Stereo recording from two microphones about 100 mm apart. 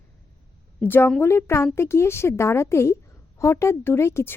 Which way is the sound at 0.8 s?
20° left (ahead or behind).